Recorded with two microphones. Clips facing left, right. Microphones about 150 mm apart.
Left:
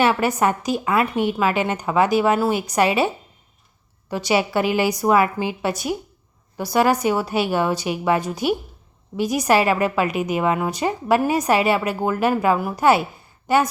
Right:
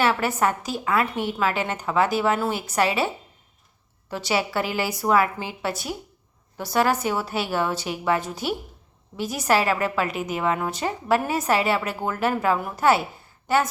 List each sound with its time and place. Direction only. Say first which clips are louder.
0.0 s a woman's voice: left 3 dB; 15° left (ahead or behind)
4.1 s a woman's voice: left 5 dB; 15° left (ahead or behind)